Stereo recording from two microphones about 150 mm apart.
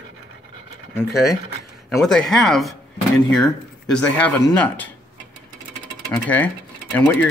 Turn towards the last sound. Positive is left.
turn(degrees=10)  # may be behind; listen again after turning